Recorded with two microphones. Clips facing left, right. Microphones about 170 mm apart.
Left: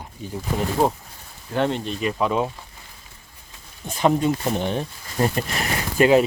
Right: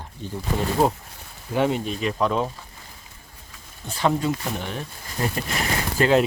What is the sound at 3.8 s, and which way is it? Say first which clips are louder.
Speech: left 3 dB; 20° left (ahead or behind).